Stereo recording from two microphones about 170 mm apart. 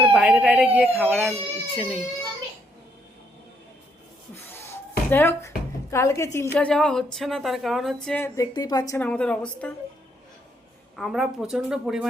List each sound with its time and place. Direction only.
0.1 s speech: 5° right (ahead or behind)
1.0 s a woman's voice: 5° left (ahead or behind)
4.5 s a sound: 15° left (ahead or behind)
5.9 s a woman's voice: 15° left (ahead or behind)
8.4 s speech: 20° left (ahead or behind)
9.0 s a woman's voice: 5° left (ahead or behind)
10.9 s a woman's voice: centre (ahead or behind)